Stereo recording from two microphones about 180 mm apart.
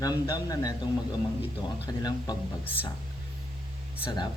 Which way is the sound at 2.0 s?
20° left (ahead or behind).